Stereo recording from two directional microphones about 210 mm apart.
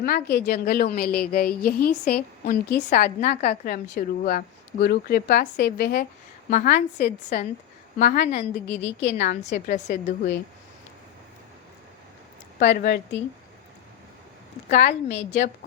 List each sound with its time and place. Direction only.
0.0 s a woman's voice: 50° left (ahead or behind)
6.5 s a woman's voice: 35° left (ahead or behind)
12.6 s a woman's voice: 45° left (ahead or behind)
14.7 s a woman's voice: 35° left (ahead or behind)